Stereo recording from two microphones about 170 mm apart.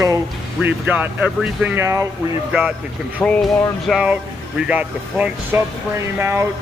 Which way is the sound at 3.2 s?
10° left (ahead or behind).